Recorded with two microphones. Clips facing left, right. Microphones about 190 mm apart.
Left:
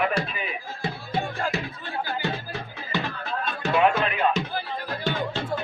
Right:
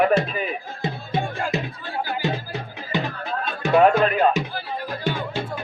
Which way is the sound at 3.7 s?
45° right (ahead or behind).